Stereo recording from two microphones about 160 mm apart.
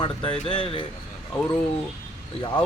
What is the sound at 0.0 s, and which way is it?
Speech, 30° left (ahead or behind).